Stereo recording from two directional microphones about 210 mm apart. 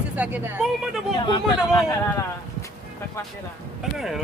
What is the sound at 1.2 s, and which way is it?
Speech, 20° left (ahead or behind).